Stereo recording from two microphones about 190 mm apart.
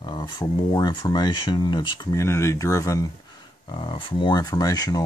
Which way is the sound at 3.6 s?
25° left (ahead or behind).